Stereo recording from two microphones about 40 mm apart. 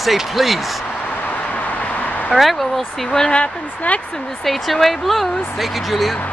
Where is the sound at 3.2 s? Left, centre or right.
Left.